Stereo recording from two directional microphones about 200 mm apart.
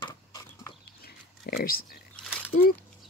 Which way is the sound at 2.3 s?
Centre (ahead or behind).